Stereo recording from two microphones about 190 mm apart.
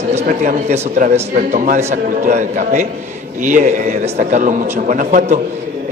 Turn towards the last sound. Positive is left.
turn(degrees=-45)  # may be behind; listen again after turning